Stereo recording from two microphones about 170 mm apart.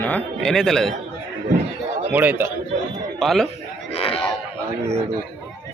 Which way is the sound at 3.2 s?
Centre (ahead or behind).